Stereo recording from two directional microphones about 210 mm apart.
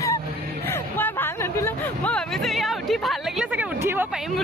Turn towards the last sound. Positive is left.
turn(degrees=-10)  # may be behind; listen again after turning